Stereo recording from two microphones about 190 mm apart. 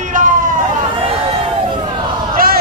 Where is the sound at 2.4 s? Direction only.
50° right (ahead or behind).